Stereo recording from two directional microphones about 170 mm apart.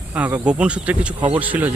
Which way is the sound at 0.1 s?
10° right (ahead or behind).